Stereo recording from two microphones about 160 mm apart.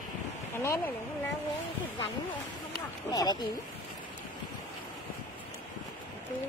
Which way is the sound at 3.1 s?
25° left (ahead or behind).